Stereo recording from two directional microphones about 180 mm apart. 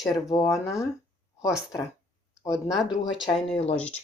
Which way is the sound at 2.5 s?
5° right (ahead or behind).